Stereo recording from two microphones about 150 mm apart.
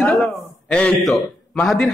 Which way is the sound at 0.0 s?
Centre (ahead or behind).